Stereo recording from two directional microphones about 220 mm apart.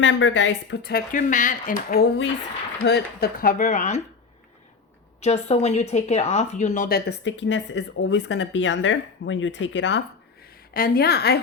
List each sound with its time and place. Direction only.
0.0 s speech: 55° left (ahead or behind); by 4.0 s 30° left (ahead or behind)
5.2 s speech: 30° left (ahead or behind); by 10.0 s 55° left (ahead or behind)
10.8 s speech: 40° left (ahead or behind)